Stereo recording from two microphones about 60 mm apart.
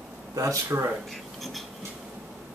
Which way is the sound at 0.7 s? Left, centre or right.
Right.